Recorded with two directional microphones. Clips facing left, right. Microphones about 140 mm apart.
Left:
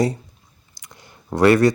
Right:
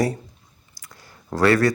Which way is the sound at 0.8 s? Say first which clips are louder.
Left 1 dB; 20° left (ahead or behind).